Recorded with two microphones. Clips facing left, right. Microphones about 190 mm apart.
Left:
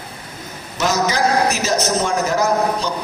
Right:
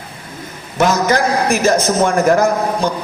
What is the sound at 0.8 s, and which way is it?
A man's voice, 55° right (ahead or behind).